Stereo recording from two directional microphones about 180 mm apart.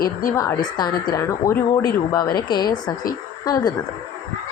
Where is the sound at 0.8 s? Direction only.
20° left (ahead or behind).